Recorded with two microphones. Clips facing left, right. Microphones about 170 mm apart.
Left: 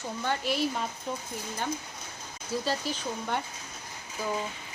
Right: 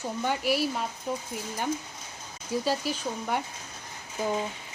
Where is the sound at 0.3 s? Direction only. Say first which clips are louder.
Right 2 dB; 10° right (ahead or behind).